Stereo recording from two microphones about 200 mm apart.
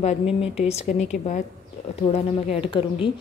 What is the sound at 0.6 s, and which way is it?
A woman's voice, 30° left (ahead or behind).